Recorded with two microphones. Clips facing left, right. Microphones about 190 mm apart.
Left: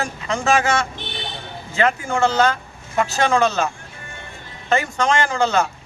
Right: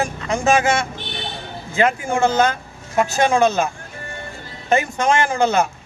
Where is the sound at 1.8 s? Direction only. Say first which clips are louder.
Right 1 dB; 15° right (ahead or behind).